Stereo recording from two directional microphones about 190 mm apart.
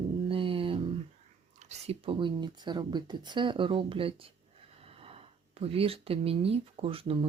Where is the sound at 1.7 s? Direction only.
30° right (ahead or behind).